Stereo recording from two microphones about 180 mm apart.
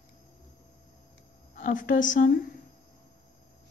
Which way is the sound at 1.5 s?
45° left (ahead or behind).